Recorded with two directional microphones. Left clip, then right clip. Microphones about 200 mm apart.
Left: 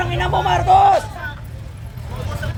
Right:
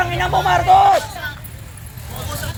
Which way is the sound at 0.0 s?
20° right (ahead or behind).